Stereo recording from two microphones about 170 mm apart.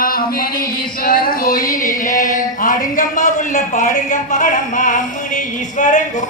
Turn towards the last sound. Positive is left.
turn(degrees=50)  # may be behind; listen again after turning